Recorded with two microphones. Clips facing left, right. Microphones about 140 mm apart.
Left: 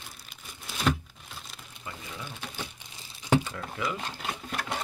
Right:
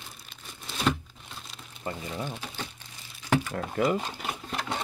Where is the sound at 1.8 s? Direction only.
40° right (ahead or behind).